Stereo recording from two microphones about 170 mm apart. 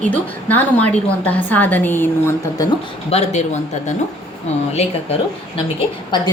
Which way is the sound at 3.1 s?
40° left (ahead or behind).